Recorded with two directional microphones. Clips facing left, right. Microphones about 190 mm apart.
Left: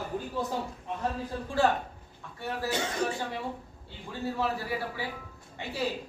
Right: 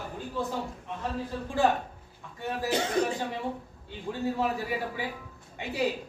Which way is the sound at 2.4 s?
15° right (ahead or behind).